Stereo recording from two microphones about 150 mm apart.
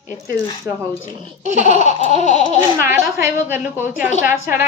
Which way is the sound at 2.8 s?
15° right (ahead or behind).